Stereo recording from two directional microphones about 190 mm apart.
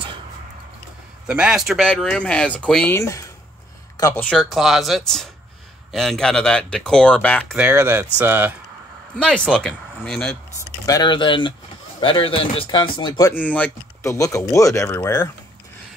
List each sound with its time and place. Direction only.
1.2 s speech: 5° right (ahead or behind); by 3.3 s 15° left (ahead or behind)
4.2 s speech: 5° left (ahead or behind)
7.5 s speech: 10° right (ahead or behind)
9.2 s speech: 5° left (ahead or behind)
10.9 s speech: 25° left (ahead or behind)
13.3 s speech: 10° left (ahead or behind)